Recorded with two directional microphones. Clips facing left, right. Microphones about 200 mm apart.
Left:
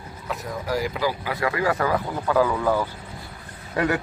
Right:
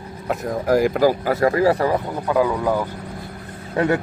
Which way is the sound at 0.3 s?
50° right (ahead or behind).